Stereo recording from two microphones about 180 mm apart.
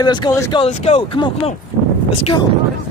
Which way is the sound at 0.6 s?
35° left (ahead or behind).